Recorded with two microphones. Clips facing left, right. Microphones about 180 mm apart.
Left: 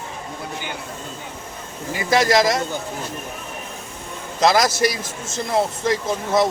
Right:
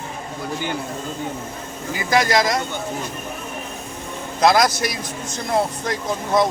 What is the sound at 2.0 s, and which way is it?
Speech, centre (ahead or behind).